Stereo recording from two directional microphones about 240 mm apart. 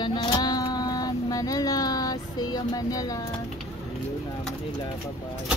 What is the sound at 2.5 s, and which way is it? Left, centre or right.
Speech, centre.